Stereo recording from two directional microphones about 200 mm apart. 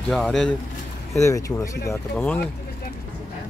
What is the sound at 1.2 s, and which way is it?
Speech, 15° left (ahead or behind).